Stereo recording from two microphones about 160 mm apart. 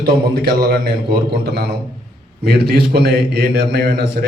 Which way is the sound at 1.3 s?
90° right.